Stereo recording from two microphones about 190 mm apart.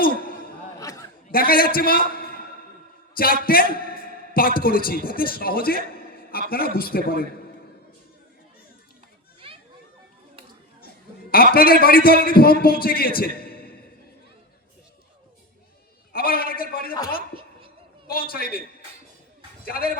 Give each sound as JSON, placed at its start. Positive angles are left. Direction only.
{"t": 0.0, "sound": "a sound", "side_deg": 50}
{"t": 0.8, "sound": "chatter", "side_deg": 15}
{"t": 1.3, "sound": "a man's voice", "side_deg": 50}
{"t": 3.4, "sound": "a man's voice", "side_deg": 50}
{"t": 10.8, "sound": "a sound", "side_deg": 50}
{"t": 11.5, "sound": "a man's voice", "side_deg": 50}
{"t": 16.1, "sound": "a man's voice", "side_deg": 50}
{"t": 18.1, "sound": "a man's voice", "side_deg": 50}
{"t": 19.6, "sound": "a man's voice", "side_deg": 50}